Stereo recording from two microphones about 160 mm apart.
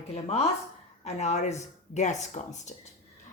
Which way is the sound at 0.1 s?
40° left (ahead or behind).